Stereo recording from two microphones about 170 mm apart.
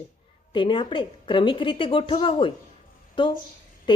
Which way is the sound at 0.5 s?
30° left (ahead or behind).